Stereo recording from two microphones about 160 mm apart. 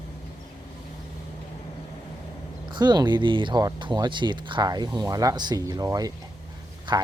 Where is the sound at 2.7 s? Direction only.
25° right (ahead or behind).